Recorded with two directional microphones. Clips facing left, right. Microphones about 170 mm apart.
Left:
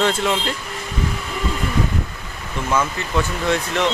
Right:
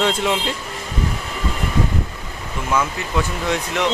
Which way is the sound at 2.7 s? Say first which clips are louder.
Even; 10° right (ahead or behind).